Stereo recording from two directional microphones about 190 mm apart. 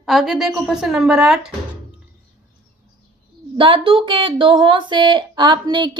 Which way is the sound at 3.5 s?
25° right (ahead or behind).